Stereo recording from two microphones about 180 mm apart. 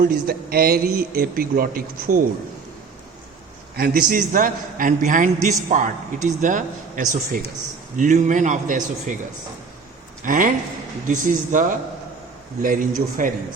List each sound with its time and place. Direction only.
0.0 s a man's voice: 55° right (ahead or behind)
3.8 s a man's voice: 55° right (ahead or behind)
10.2 s a man's voice: 45° right (ahead or behind)
12.6 s a man's voice: 50° right (ahead or behind)